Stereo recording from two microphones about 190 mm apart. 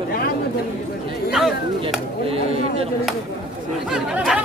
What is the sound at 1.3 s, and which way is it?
Speech, 5° right (ahead or behind).